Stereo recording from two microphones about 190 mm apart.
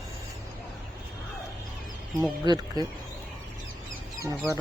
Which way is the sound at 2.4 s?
20° right (ahead or behind).